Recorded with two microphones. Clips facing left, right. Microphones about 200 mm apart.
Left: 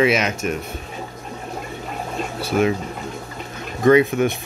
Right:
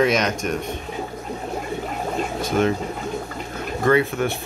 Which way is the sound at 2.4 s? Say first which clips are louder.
Left 2 dB; 10° left (ahead or behind).